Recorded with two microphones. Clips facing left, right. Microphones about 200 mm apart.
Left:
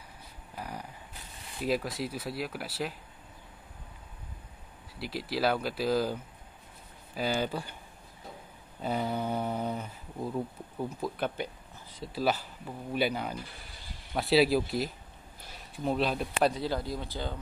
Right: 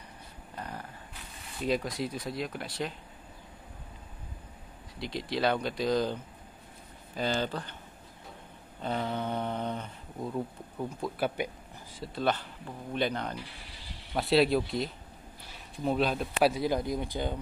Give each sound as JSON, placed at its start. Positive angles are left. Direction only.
{"t": 0.6, "sound": "a sound", "side_deg": 10}
{"t": 1.6, "sound": "speech", "side_deg": 5}
{"t": 4.9, "sound": "speech", "side_deg": 5}
{"t": 7.2, "sound": "speech", "side_deg": 10}
{"t": 8.8, "sound": "speech", "side_deg": 10}
{"t": 11.0, "sound": "speech", "side_deg": -5}
{"t": 12.0, "sound": "speech", "side_deg": 5}
{"t": 13.4, "sound": "speech", "side_deg": 45}
{"t": 14.1, "sound": "speech", "side_deg": 0}
{"t": 15.7, "sound": "speech", "side_deg": 0}
{"t": 16.5, "sound": "speech", "side_deg": -15}